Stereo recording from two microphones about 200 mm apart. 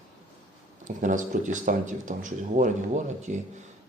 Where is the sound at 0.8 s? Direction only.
40° right (ahead or behind).